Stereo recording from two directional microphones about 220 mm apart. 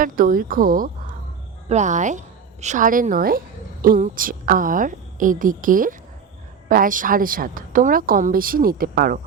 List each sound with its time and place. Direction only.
0.0 s a woman's voice: 40° right (ahead or behind)